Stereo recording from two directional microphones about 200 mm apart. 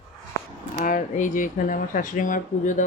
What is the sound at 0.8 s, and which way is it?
Speech, 40° left (ahead or behind).